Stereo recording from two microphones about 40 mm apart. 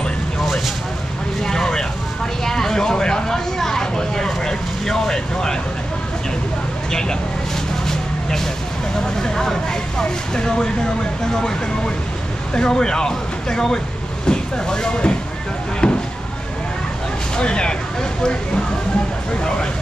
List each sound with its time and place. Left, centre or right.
1.4 s vehicle: centre
6.9 s speech: centre
7.8 s vehicle: centre
9.0 s speech: centre
15.8 s a sound: left
17.4 s speech: left